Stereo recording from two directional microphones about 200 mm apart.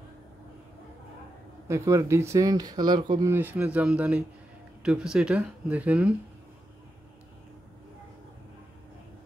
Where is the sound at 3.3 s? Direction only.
10° right (ahead or behind).